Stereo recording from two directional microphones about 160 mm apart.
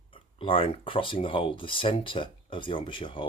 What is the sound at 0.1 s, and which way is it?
Speech, 35° left (ahead or behind).